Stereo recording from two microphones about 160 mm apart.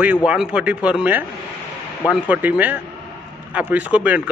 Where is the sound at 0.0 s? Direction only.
10° right (ahead or behind).